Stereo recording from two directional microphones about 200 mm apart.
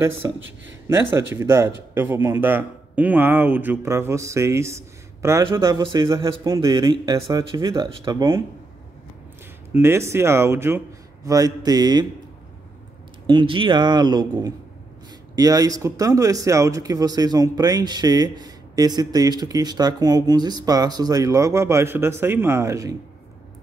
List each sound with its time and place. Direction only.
0.2 s speech: 15° right (ahead or behind)
9.8 s speech: 15° right (ahead or behind)
13.3 s speech: 25° right (ahead or behind)